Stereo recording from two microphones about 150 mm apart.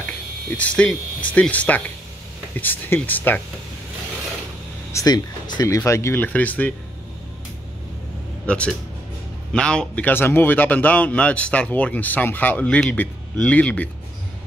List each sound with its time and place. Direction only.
0.5 s speech: 10° left (ahead or behind)
4.9 s speech: 25° left (ahead or behind); by 6.7 s 10° left (ahead or behind)
8.5 s speech: 5° left (ahead or behind)